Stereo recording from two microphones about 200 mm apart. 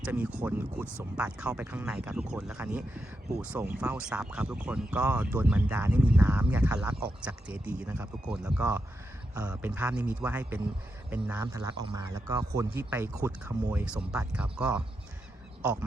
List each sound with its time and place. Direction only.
0.0 s speech: 5° right (ahead or behind)